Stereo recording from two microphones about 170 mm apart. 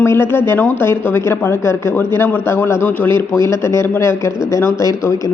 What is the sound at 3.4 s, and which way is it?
A woman's voice, 15° left (ahead or behind).